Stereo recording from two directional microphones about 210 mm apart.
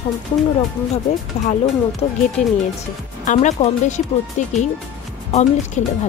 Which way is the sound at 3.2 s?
35° left (ahead or behind).